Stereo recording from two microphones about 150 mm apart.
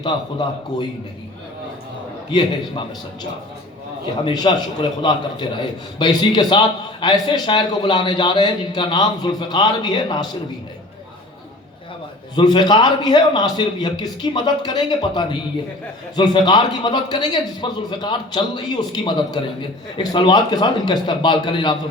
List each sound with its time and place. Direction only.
0.0 s a man's voice: 30° left (ahead or behind)
4.2 s a man's voice: 30° left (ahead or behind)
12.4 s a man's voice: 30° left (ahead or behind)